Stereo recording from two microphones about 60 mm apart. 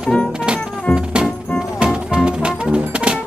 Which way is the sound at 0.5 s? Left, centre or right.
Centre.